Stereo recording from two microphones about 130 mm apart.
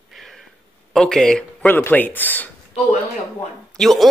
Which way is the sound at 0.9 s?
5° left (ahead or behind).